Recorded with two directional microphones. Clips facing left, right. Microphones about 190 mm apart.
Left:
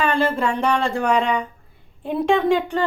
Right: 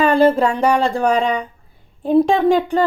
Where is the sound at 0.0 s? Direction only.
35° right (ahead or behind).